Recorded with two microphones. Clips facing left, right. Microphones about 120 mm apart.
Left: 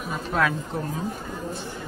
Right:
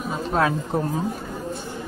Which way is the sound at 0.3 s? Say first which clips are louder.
Right 2 dB; 30° right (ahead or behind).